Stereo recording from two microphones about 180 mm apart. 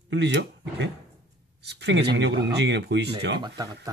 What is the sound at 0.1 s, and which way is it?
Speech, 75° right (ahead or behind).